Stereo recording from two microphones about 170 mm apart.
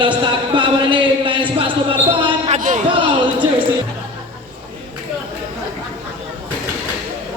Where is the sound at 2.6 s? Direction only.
50° right (ahead or behind).